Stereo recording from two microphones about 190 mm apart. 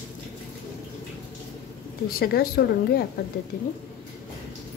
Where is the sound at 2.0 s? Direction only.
50° left (ahead or behind).